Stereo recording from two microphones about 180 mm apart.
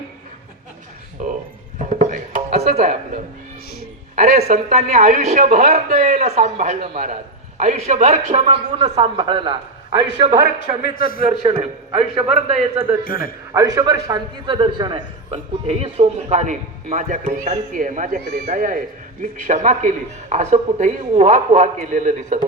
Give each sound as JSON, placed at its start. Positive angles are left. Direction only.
{"t": 1.2, "sound": "speech", "side_deg": -40}
{"t": 1.8, "sound": "music", "side_deg": -40}
{"t": 2.7, "sound": "a man's voice", "side_deg": -40}
{"t": 4.1, "sound": "a man's voice", "side_deg": -40}
{"t": 10.9, "sound": "a man's voice", "side_deg": 50}
{"t": 11.3, "sound": "a man's voice", "side_deg": -35}
{"t": 13.1, "sound": "a man's voice", "side_deg": 50}
{"t": 13.5, "sound": "a man's voice", "side_deg": -20}